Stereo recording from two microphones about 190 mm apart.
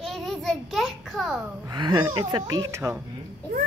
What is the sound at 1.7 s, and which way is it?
Speech, 20° right (ahead or behind).